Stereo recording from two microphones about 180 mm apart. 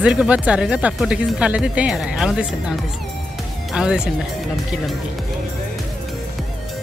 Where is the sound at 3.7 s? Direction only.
5° right (ahead or behind).